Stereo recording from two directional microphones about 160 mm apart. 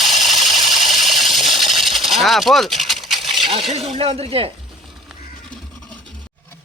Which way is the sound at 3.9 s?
35° right (ahead or behind).